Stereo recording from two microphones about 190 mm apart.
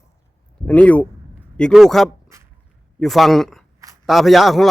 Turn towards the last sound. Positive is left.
turn(degrees=0)  # may be behind; listen again after turning